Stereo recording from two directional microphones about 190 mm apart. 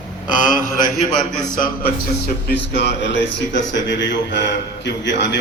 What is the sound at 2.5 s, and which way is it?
A man's voice, 65° left (ahead or behind).